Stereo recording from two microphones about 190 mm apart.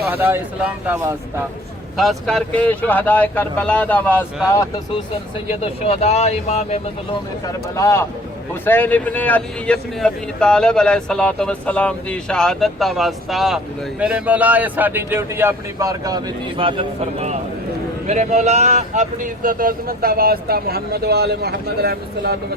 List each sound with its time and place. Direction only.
0.1 s a man's voice: 10° right (ahead or behind)
2.0 s speech: centre (ahead or behind)
5.5 s speech: 35° left (ahead or behind)
7.4 s a man's voice: 15° left (ahead or behind); by 22.4 s 55° right (ahead or behind)